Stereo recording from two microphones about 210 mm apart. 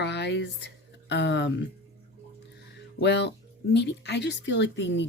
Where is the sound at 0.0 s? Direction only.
55° left (ahead or behind).